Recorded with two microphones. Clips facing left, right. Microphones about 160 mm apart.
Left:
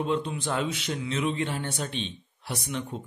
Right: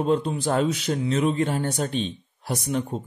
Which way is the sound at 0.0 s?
40° right (ahead or behind).